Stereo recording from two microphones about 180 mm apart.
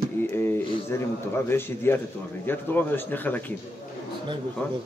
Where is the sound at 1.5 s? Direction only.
15° left (ahead or behind).